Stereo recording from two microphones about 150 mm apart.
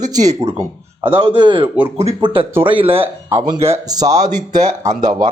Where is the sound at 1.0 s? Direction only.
30° right (ahead or behind).